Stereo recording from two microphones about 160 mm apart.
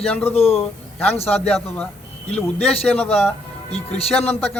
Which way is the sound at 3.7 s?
40° left (ahead or behind).